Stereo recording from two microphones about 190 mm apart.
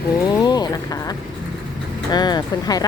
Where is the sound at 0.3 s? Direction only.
20° left (ahead or behind).